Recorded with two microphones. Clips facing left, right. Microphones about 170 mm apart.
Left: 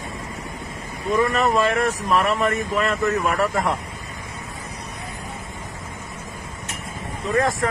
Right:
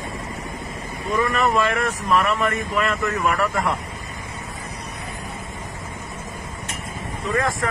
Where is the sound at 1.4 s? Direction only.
40° left (ahead or behind).